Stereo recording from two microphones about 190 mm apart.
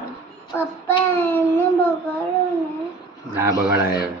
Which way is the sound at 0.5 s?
10° left (ahead or behind).